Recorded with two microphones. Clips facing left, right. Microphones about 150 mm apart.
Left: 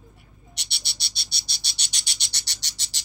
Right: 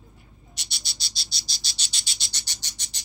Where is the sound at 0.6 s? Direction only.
65° left (ahead or behind).